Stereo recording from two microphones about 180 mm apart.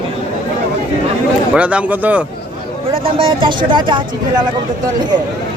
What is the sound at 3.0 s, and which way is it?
Speech, 30° right (ahead or behind).